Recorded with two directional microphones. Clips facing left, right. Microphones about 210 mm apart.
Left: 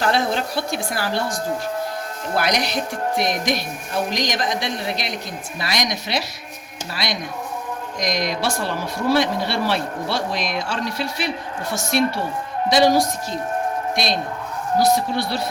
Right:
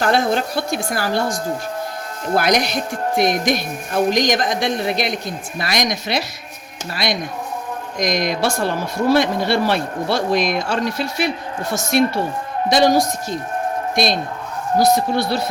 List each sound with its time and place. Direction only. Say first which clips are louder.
0.0 s speech: right 3 dB; 50° right (ahead or behind)
13.9 s speech: right 3 dB; 45° right (ahead or behind)